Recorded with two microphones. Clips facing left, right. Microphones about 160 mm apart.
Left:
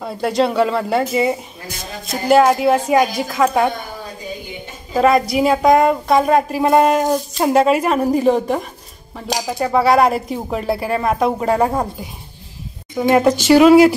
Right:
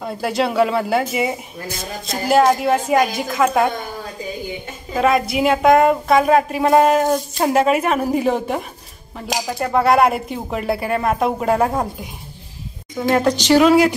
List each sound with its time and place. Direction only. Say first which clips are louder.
0.0 s speech: left 3 dB; centre (ahead or behind)
4.9 s speech: left 3 dB; centre (ahead or behind)